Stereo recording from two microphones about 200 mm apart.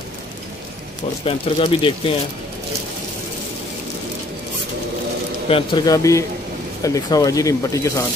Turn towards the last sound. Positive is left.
turn(degrees=15)  # may be behind; listen again after turning